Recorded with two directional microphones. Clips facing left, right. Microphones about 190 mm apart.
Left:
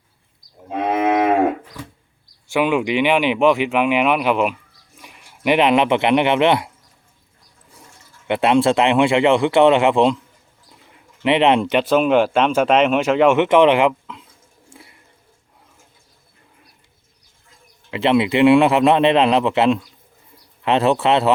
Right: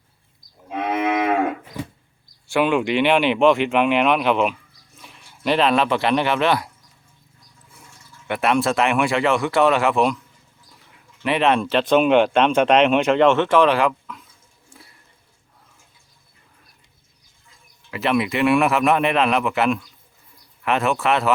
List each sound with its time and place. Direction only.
0.7 s moo: 30° left (ahead or behind)
2.5 s speech: 10° left (ahead or behind)
8.3 s speech: 25° left (ahead or behind)
11.2 s speech: 20° left (ahead or behind)
11.8 s speech: centre (ahead or behind); by 14.3 s 25° left (ahead or behind)
14.8 s a sound: 25° left (ahead or behind)
17.9 s speech: 25° left (ahead or behind)